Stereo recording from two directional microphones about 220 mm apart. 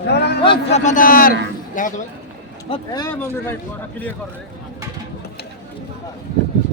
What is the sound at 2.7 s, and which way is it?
Speech, 20° left (ahead or behind).